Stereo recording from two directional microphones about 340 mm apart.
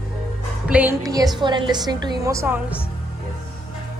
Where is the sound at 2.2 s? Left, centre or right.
Centre.